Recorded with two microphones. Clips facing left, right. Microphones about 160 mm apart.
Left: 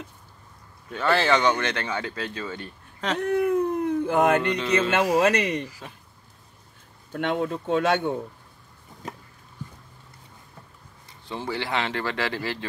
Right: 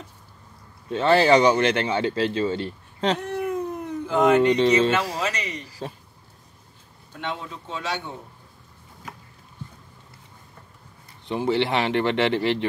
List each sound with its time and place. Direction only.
0.8 s speech: 25° right (ahead or behind)
3.2 s speech: 55° left (ahead or behind)
5.8 s speech: 30° right (ahead or behind)
7.1 s speech: 55° left (ahead or behind)
11.2 s speech: 20° right (ahead or behind)